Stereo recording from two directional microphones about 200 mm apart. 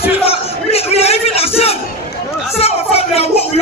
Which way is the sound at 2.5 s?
30° left (ahead or behind).